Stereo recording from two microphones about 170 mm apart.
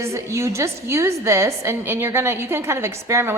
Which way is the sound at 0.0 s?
15° right (ahead or behind).